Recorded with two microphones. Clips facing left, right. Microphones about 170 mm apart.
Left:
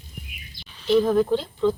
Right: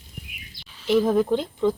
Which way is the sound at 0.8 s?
10° right (ahead or behind).